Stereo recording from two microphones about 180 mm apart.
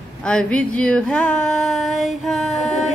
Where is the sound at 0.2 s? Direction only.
5° left (ahead or behind).